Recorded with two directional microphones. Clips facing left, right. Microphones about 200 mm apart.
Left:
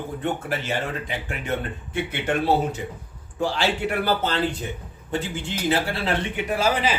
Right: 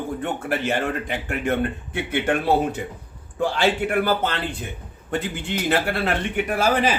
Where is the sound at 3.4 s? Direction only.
55° right (ahead or behind).